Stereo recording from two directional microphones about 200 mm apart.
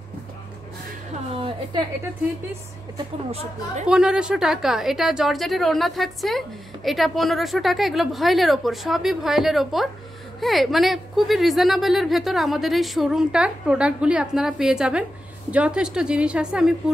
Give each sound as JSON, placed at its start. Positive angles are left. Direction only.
{"t": 1.3, "sound": "a woman's voice", "side_deg": -25}
{"t": 3.3, "sound": "speech", "side_deg": -30}
{"t": 3.9, "sound": "a woman's voice", "side_deg": -5}